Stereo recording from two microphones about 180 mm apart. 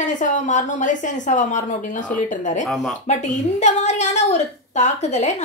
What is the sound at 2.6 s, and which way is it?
Speech, centre (ahead or behind).